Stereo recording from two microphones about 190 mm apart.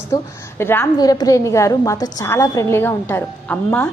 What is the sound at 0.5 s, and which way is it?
A woman's voice, 15° left (ahead or behind).